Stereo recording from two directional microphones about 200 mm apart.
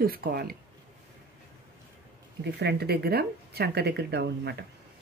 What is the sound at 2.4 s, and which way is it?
Speech, 55° right (ahead or behind).